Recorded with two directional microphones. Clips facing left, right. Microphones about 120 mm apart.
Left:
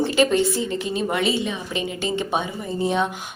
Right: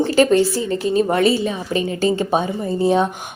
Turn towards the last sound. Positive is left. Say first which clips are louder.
# right 6 dB
turn(degrees=-35)  # may be behind; listen again after turning